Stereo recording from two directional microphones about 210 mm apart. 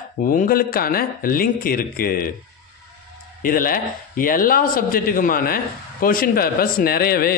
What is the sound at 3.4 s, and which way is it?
Speech, 40° left (ahead or behind).